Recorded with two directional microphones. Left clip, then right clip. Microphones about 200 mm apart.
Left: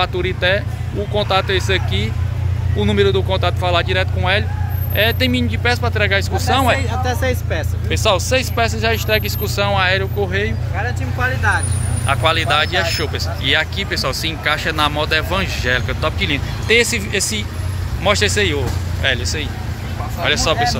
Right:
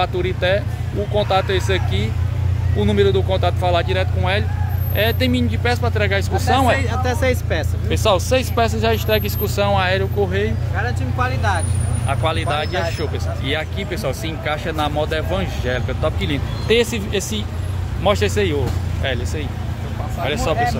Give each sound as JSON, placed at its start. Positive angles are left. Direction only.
{"t": 0.0, "sound": "speech", "side_deg": 0}
{"t": 12.1, "sound": "speech", "side_deg": -5}